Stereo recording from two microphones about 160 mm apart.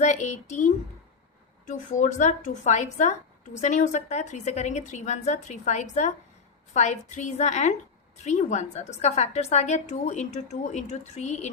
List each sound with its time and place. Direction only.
0.0 s a woman's voice: 45° left (ahead or behind)